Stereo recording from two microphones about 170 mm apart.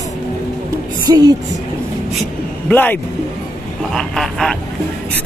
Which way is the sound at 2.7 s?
10° left (ahead or behind).